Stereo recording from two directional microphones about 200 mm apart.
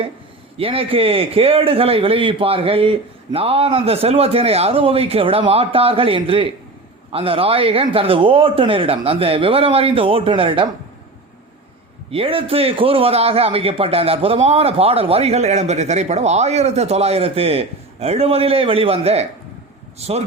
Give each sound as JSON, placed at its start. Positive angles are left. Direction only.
{"t": 0.5, "sound": "a man's voice", "side_deg": -30}
{"t": 12.1, "sound": "a man's voice", "side_deg": -25}